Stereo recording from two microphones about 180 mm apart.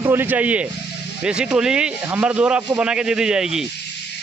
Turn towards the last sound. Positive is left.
turn(degrees=-5)  # may be behind; listen again after turning